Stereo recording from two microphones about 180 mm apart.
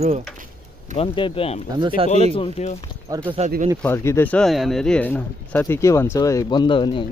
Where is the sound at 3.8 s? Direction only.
15° left (ahead or behind).